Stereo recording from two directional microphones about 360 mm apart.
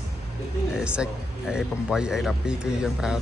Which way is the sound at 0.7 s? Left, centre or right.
Centre.